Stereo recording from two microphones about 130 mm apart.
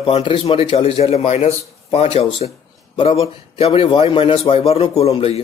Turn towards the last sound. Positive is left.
turn(degrees=50)  # may be behind; listen again after turning